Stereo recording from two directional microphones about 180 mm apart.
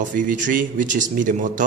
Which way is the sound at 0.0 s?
45° right (ahead or behind).